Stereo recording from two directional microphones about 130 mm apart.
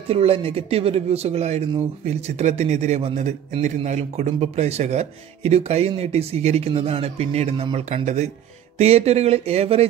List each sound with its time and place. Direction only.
0.1 s a man's voice: 50° right (ahead or behind); by 8.3 s 65° right (ahead or behind)
8.7 s speech: 55° right (ahead or behind)